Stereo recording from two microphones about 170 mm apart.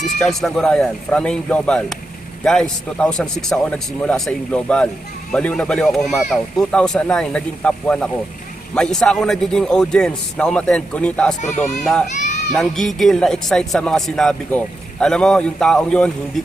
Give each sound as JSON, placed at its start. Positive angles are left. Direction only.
{"t": 0.2, "sound": "speech", "side_deg": 0}
{"t": 11.4, "sound": "speech", "side_deg": 45}
{"t": 11.8, "sound": "speech", "side_deg": 0}
{"t": 12.1, "sound": "children playing", "side_deg": 45}
{"t": 12.5, "sound": "speech", "side_deg": 0}